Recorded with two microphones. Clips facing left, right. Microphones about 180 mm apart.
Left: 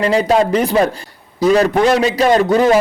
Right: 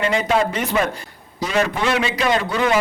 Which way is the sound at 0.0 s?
35° left (ahead or behind).